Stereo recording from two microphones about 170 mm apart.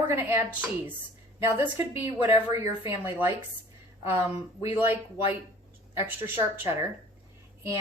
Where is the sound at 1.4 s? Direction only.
10° right (ahead or behind).